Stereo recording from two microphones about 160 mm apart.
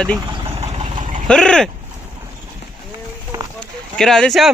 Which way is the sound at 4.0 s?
5° left (ahead or behind).